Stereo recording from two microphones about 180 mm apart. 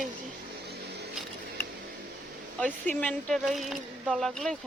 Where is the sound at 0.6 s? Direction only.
65° right (ahead or behind).